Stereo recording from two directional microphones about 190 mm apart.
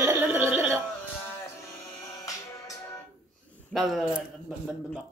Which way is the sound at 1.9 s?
15° left (ahead or behind).